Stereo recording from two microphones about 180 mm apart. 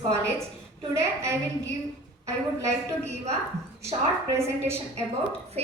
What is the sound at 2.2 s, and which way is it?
Speech, 15° right (ahead or behind).